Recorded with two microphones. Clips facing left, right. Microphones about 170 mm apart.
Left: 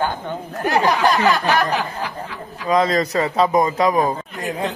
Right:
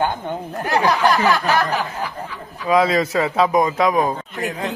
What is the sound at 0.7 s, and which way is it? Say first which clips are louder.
Speech: even; 15° left (ahead or behind).